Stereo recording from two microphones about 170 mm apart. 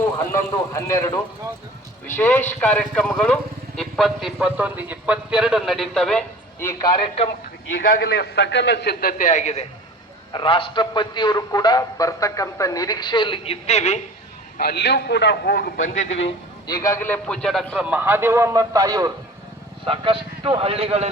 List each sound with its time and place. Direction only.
0.0 s a man's voice: 15° left (ahead or behind)
6.6 s a man's voice: 20° left (ahead or behind)
7.7 s a man's voice: 55° left (ahead or behind)
10.3 s a man's voice: 30° left (ahead or behind)
14.6 s a man's voice: 75° left (ahead or behind)
16.0 s a man's voice: 40° left (ahead or behind)
16.6 s speech: 20° left (ahead or behind); by 17.7 s 5° left (ahead or behind)
17.7 s a man's voice: 10° right (ahead or behind)
19.8 s a man's voice: 30° right (ahead or behind)